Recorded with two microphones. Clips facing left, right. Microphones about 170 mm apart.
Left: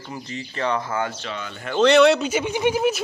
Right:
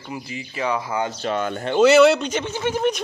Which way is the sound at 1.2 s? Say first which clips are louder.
Right 9 dB; 50° right (ahead or behind).